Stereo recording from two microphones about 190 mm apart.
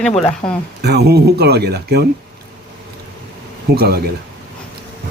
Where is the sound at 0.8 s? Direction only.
60° right (ahead or behind).